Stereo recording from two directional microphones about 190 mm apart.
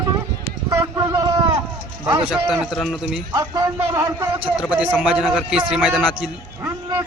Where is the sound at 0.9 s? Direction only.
20° right (ahead or behind).